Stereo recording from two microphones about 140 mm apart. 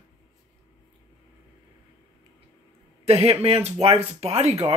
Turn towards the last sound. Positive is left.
turn(degrees=-45)  # may be behind; listen again after turning